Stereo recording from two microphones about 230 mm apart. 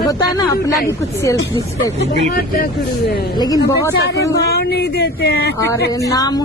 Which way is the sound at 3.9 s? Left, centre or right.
Left.